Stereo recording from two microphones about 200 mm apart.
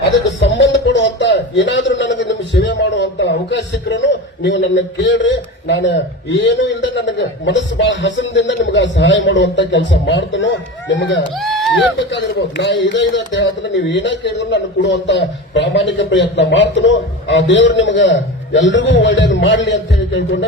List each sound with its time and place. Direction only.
0.3 s a sound: 65° left (ahead or behind)
4.4 s a man's voice: 65° left (ahead or behind)
11.3 s speech: centre (ahead or behind)
11.9 s a man's voice: 60° left (ahead or behind)